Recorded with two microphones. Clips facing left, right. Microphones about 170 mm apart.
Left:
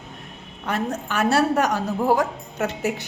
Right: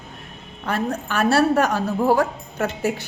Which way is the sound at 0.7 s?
20° left (ahead or behind).